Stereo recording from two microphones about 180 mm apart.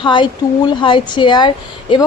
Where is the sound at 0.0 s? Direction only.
25° left (ahead or behind).